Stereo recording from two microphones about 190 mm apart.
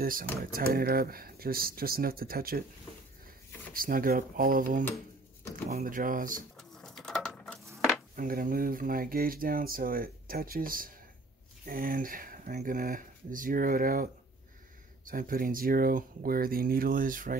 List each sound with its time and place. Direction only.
0.0 s speech: 50° right (ahead or behind)
3.7 s speech: 50° right (ahead or behind)
6.5 s a sound: 5° left (ahead or behind)
8.2 s speech: 45° right (ahead or behind)
15.0 s speech: 45° right (ahead or behind)